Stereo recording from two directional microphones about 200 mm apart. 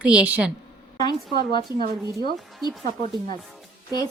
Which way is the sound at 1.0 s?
20° left (ahead or behind).